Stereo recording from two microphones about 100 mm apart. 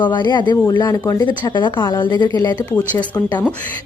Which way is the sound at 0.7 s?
40° left (ahead or behind).